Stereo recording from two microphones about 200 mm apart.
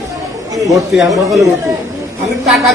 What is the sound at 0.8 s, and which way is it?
Speech, centre (ahead or behind).